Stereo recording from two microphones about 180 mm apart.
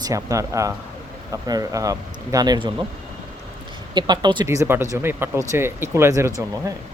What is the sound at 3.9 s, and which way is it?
Speech, 25° right (ahead or behind).